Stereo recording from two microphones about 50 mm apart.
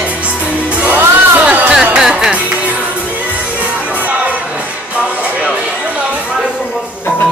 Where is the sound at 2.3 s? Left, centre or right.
Right.